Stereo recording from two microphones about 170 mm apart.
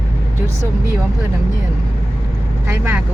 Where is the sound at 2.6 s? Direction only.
15° right (ahead or behind).